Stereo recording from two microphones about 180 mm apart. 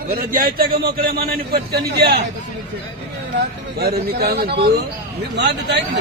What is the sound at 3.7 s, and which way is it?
A man's voice, 60° right (ahead or behind).